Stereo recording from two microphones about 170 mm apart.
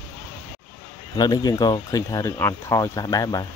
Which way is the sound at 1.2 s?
25° left (ahead or behind).